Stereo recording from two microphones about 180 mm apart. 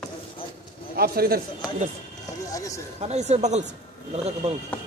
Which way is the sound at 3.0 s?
35° right (ahead or behind).